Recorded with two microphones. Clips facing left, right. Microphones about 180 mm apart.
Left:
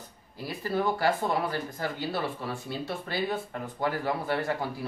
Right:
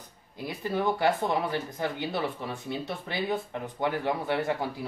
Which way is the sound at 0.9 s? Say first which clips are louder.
Right 1 dB; 20° right (ahead or behind).